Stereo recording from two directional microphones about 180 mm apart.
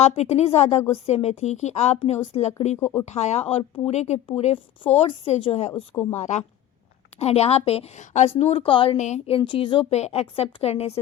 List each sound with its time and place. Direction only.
0.0 s a woman's voice: 35° left (ahead or behind)
5.7 s speech: 10° left (ahead or behind)
6.1 s a woman's voice: 40° left (ahead or behind)